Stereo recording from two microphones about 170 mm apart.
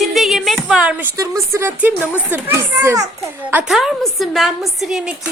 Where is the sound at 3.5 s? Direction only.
5° right (ahead or behind).